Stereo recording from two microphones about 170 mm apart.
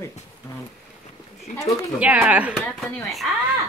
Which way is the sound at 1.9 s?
10° right (ahead or behind).